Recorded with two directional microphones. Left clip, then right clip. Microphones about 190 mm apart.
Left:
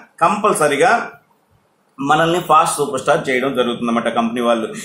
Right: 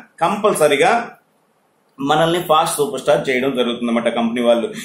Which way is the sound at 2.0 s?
10° left (ahead or behind).